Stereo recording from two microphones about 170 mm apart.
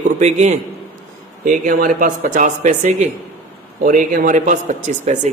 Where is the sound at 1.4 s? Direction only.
55° right (ahead or behind).